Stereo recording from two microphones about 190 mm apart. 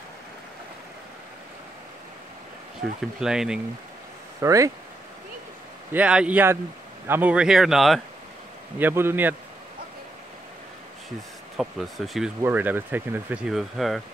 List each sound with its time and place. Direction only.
3.2 s speech: 5° right (ahead or behind)
4.4 s speech: 15° right (ahead or behind)
5.9 s speech: 5° right (ahead or behind)
8.7 s speech: 10° right (ahead or behind)
11.6 s speech: centre (ahead or behind)